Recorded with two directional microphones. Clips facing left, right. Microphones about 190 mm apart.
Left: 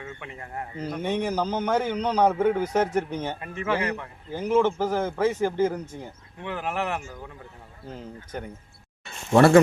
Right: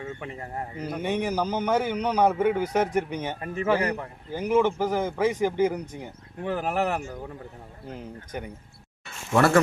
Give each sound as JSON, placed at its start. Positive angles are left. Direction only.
{"t": 0.0, "sound": "speech", "side_deg": -35}
{"t": 0.9, "sound": "a man's voice", "side_deg": -10}
{"t": 3.4, "sound": "speech", "side_deg": -40}
{"t": 4.3, "sound": "a man's voice", "side_deg": -10}
{"t": 6.4, "sound": "speech", "side_deg": -40}
{"t": 7.9, "sound": "a man's voice", "side_deg": -10}
{"t": 9.3, "sound": "speech", "side_deg": 30}